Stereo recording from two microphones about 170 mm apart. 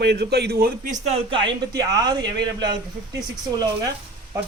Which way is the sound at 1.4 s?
20° right (ahead or behind).